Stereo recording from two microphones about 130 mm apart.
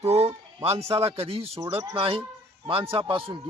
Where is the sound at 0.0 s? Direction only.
55° right (ahead or behind).